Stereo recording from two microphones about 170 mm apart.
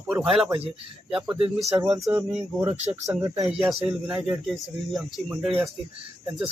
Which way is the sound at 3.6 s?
10° right (ahead or behind).